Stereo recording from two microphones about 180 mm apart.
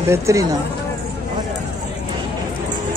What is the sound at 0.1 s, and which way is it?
Speech, 15° right (ahead or behind).